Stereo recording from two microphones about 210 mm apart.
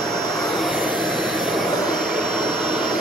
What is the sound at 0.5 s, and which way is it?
Aircraft, centre (ahead or behind).